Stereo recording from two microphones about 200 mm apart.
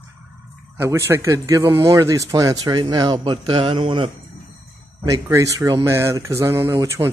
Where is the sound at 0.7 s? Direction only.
15° right (ahead or behind).